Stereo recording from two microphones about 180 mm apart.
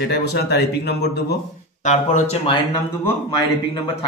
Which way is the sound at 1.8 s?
40° left (ahead or behind).